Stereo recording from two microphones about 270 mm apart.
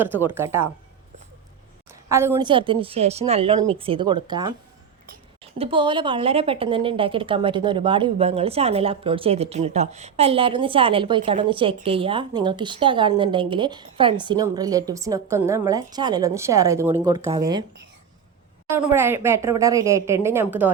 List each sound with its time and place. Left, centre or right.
0.0 s a woman's voice: centre
1.9 s a woman's voice: centre
18.7 s a woman's voice: centre